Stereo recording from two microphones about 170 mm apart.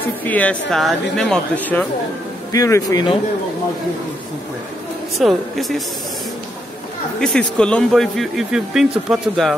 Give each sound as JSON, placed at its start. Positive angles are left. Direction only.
{"t": 0.2, "sound": "speech", "side_deg": 10}
{"t": 2.5, "sound": "speech", "side_deg": 20}
{"t": 5.1, "sound": "speech", "side_deg": 0}
{"t": 7.2, "sound": "speech", "side_deg": 5}